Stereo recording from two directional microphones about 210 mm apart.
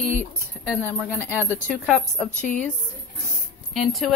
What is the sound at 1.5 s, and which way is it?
Speech, 5° left (ahead or behind).